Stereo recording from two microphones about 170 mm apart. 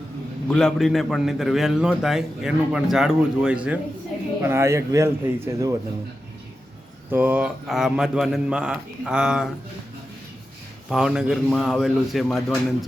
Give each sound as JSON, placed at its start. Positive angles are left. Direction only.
{"t": 0.4, "sound": "a man's voice", "side_deg": 5}
{"t": 7.1, "sound": "a man's voice", "side_deg": -10}
{"t": 10.8, "sound": "a man's voice", "side_deg": -5}